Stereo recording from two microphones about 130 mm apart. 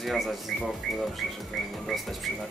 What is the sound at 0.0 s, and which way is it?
A woman's voice, centre (ahead or behind).